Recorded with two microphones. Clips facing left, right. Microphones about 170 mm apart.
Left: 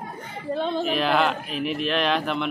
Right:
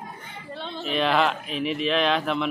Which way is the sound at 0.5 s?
50° left (ahead or behind).